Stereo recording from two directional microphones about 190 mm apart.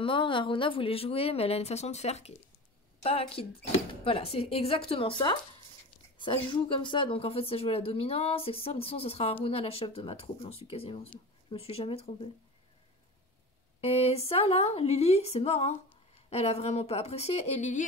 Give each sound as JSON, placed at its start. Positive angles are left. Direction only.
{"t": 0.0, "sound": "speech", "side_deg": 25}
{"t": 13.7, "sound": "speech", "side_deg": 30}